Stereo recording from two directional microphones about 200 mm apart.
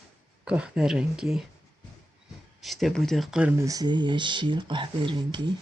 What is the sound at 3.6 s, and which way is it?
Speech, 20° right (ahead or behind).